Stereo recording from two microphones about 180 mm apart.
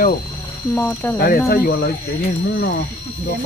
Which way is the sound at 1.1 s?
55° left (ahead or behind).